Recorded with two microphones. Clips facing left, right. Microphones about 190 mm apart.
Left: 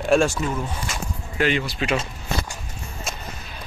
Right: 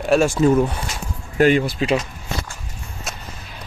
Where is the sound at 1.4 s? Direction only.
45° right (ahead or behind).